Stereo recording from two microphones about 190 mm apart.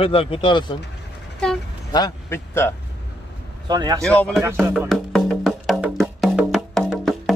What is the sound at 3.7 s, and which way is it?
Speech, 20° right (ahead or behind).